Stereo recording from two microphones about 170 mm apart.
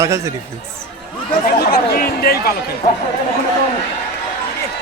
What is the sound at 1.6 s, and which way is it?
Speech, 65° left (ahead or behind).